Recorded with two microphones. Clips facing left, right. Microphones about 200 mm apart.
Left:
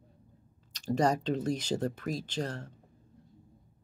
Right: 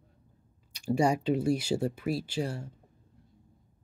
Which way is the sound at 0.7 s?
10° right (ahead or behind).